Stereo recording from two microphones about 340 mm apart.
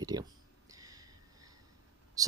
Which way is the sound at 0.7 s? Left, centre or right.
Centre.